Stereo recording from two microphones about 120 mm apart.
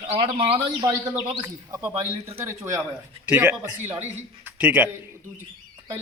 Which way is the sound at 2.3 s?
20° right (ahead or behind).